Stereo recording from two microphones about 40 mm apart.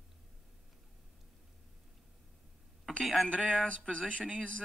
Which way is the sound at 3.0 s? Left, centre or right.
Centre.